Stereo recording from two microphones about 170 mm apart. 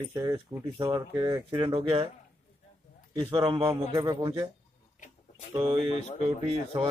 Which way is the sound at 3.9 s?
20° right (ahead or behind).